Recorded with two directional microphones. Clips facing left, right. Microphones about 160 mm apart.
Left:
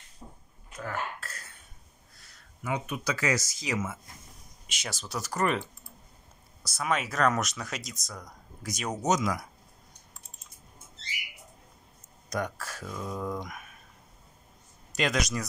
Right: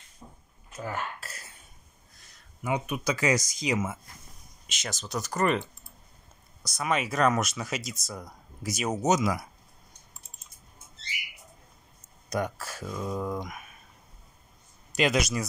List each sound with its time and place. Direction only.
0.2 s a sound: 5° left (ahead or behind)
0.7 s a sound: 10° right (ahead or behind)
2.6 s speech: 15° right (ahead or behind)
4.6 s speech: 10° left (ahead or behind); by 9.5 s 5° right (ahead or behind)
12.3 s speech: 5° right (ahead or behind)
14.9 s speech: 5° right (ahead or behind)